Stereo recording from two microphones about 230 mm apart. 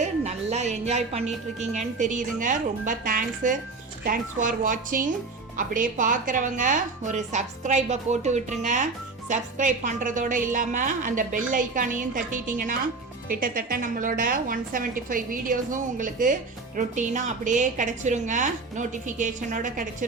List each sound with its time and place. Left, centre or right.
0.0 s music: right
1.5 s a woman's voice: right